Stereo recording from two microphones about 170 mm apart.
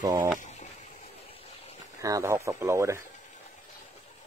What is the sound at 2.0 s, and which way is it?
Speech, 15° right (ahead or behind).